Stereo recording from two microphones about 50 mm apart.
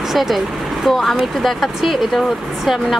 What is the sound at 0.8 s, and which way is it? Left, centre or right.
Speech, centre.